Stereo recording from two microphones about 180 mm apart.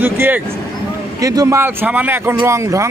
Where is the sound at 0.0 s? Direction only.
10° right (ahead or behind).